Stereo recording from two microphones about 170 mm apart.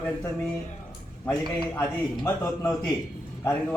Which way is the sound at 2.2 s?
15° left (ahead or behind).